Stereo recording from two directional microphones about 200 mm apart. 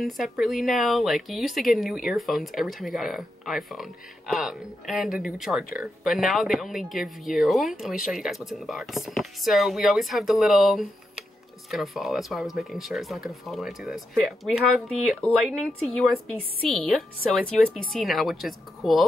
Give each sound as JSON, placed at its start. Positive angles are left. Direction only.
{"t": 0.0, "sound": "speech", "side_deg": 0}